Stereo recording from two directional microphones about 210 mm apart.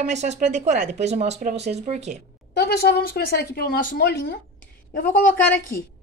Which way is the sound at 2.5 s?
50° left (ahead or behind).